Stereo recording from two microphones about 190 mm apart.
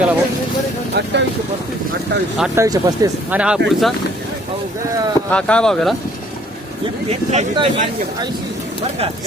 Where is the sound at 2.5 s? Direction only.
15° right (ahead or behind).